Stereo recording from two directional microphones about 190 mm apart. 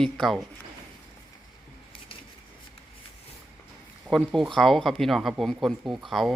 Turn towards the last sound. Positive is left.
turn(degrees=0)  # may be behind; listen again after turning